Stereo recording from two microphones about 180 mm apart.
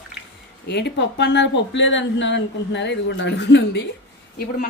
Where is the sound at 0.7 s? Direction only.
70° left (ahead or behind).